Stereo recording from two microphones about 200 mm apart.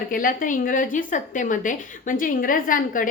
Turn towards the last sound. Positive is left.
turn(degrees=45)  # may be behind; listen again after turning